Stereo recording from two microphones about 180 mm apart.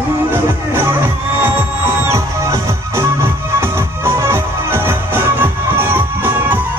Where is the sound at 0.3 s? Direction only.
15° right (ahead or behind).